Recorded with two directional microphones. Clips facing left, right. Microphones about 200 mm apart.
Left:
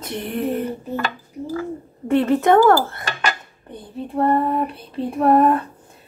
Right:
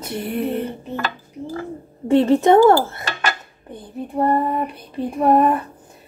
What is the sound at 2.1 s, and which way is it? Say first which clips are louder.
Speech: right 2 dB; 25° right (ahead or behind).